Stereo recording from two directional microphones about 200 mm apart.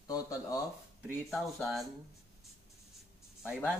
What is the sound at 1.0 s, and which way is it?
Speech, centre (ahead or behind).